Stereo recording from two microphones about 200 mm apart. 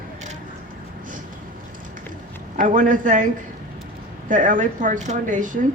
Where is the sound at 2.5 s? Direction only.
40° right (ahead or behind).